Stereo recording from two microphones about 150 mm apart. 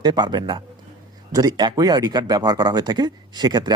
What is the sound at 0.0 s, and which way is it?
Speech, 30° right (ahead or behind).